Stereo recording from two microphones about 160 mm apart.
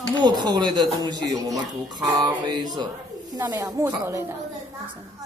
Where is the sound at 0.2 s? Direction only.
25° right (ahead or behind).